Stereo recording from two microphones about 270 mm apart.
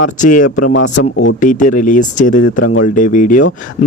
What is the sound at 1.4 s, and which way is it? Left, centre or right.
Speech, left.